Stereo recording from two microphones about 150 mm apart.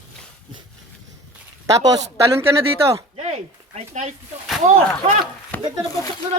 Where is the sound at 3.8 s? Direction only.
55° right (ahead or behind).